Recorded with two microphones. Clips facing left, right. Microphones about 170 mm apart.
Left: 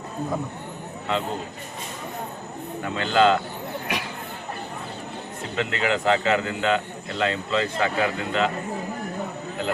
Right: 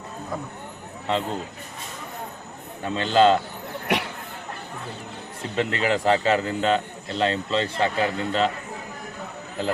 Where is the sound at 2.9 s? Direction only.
30° right (ahead or behind).